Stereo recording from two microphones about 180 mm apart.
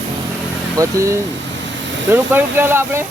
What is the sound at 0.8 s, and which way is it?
Speech, 15° right (ahead or behind).